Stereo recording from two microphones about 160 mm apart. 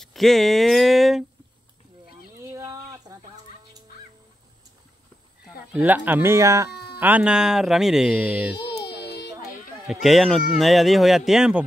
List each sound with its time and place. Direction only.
0.0 s speech: centre (ahead or behind)
2.5 s a sound: 20° right (ahead or behind)
5.4 s speech: 10° right (ahead or behind)
6.7 s music: 85° left
7.0 s speech: 10° right (ahead or behind)
9.0 s a sound: 90° left
9.8 s speech: centre (ahead or behind)